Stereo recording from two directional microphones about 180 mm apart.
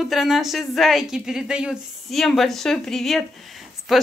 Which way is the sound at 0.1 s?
Centre (ahead or behind).